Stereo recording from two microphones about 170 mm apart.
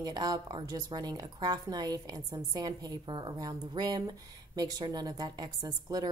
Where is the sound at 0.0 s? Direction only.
20° right (ahead or behind).